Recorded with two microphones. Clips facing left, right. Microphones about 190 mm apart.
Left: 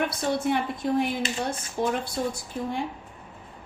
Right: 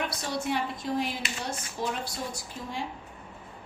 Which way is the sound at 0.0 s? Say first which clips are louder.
Left 6 dB; 55° left (ahead or behind).